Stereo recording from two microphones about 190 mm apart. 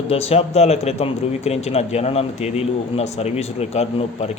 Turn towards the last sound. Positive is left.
turn(degrees=35)  # may be behind; listen again after turning